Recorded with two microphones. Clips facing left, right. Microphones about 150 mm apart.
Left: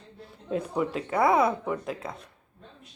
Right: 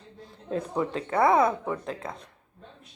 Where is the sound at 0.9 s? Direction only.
30° right (ahead or behind).